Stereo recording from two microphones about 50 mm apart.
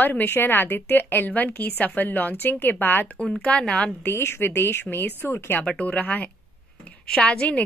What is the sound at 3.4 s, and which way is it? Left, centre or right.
Speech, left.